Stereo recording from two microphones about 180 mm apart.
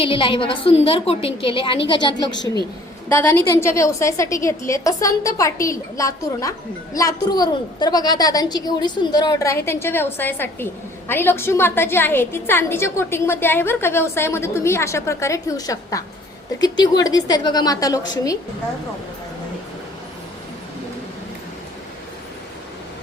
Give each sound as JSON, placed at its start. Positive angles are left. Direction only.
{"t": 0.0, "sound": "a woman's voice", "side_deg": 30}